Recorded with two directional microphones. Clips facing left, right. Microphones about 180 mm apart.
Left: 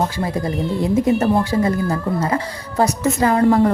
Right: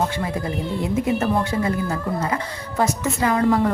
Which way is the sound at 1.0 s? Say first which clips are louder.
Left 4 dB; 35° left (ahead or behind).